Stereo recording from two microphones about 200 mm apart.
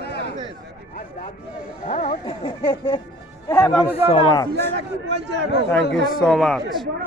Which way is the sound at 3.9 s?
30° left (ahead or behind).